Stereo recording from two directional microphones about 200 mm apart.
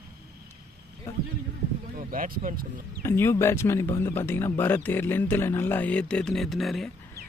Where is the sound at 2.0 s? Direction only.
45° right (ahead or behind).